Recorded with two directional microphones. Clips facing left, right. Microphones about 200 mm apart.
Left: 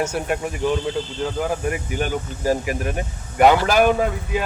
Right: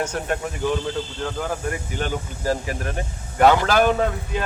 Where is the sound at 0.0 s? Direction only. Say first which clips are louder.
Left 2 dB; 10° left (ahead or behind).